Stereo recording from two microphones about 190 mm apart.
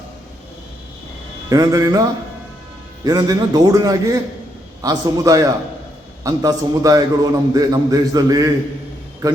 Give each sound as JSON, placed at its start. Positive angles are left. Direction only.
{"t": 1.5, "sound": "a man's voice", "side_deg": -20}
{"t": 3.0, "sound": "a man's voice", "side_deg": -20}